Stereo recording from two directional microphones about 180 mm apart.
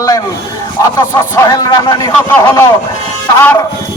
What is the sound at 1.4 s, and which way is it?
Speech, 20° left (ahead or behind).